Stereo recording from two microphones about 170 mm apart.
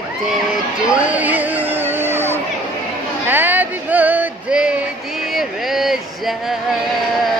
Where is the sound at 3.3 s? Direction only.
10° right (ahead or behind).